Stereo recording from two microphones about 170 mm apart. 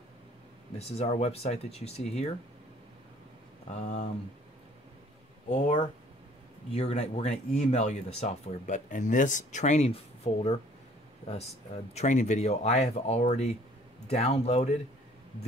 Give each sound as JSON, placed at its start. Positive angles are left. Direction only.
{"t": 0.7, "sound": "speech", "side_deg": 40}
{"t": 3.7, "sound": "speech", "side_deg": 45}
{"t": 5.5, "sound": "speech", "side_deg": 30}